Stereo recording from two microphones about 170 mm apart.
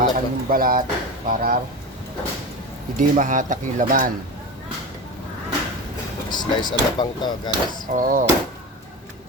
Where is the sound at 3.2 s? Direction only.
50° right (ahead or behind).